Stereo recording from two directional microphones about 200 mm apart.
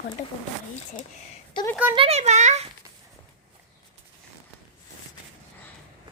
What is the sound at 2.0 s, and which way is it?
Speech, 30° right (ahead or behind).